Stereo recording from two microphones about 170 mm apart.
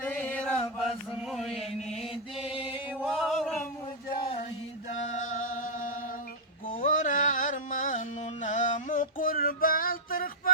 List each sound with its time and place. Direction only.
0.0 s chant: 10° left (ahead or behind)
5.0 s music: 45° left (ahead or behind)
6.7 s carnatic music: 50° left (ahead or behind)